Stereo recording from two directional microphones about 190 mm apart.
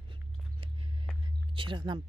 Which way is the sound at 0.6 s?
30° right (ahead or behind).